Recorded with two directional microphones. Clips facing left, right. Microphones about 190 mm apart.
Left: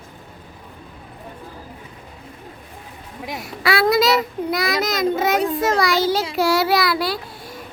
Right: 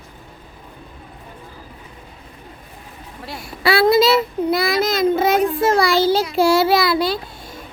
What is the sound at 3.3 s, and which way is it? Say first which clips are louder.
A child's voice: right 3 dB; 30° right (ahead or behind).